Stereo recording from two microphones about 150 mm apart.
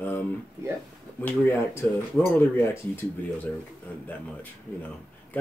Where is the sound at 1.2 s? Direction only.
15° left (ahead or behind).